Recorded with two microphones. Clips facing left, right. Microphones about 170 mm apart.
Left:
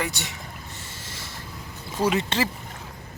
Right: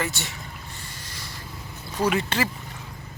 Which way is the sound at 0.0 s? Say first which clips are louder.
Even; 20° left (ahead or behind).